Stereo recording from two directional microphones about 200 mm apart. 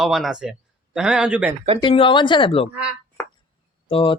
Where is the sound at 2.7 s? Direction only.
5° right (ahead or behind).